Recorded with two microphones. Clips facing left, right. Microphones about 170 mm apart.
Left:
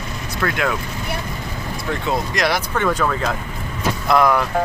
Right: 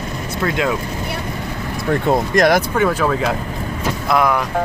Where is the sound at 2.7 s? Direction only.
10° right (ahead or behind).